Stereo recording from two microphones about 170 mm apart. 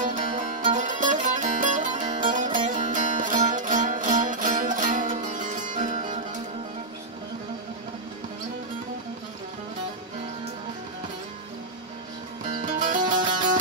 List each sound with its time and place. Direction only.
0.0 s music: 50° right (ahead or behind)
12.6 s music: 50° right (ahead or behind)